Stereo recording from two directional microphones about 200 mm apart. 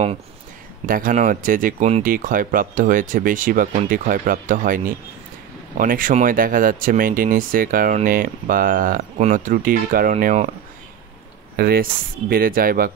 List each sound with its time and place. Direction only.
0.8 s speech: 45° right (ahead or behind)
11.5 s speech: 50° right (ahead or behind)